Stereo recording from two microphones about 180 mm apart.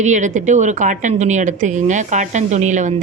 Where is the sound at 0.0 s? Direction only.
40° right (ahead or behind).